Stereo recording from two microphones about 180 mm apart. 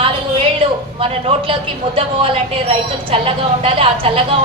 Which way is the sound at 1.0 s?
30° right (ahead or behind).